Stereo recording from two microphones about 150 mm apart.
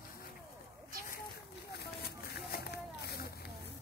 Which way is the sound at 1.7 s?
90° left.